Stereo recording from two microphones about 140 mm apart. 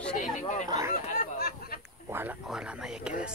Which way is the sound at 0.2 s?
60° left (ahead or behind).